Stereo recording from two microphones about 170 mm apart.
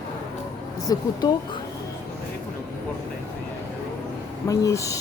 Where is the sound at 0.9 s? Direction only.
20° left (ahead or behind).